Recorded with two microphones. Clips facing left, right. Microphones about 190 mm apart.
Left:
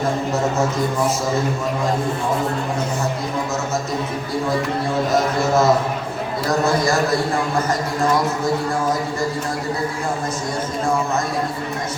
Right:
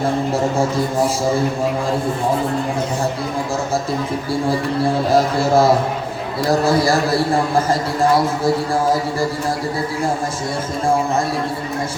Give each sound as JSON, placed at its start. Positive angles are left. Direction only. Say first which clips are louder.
{"t": 5.1, "sound": "speech", "louder": "right 3 dB", "side_deg": -30}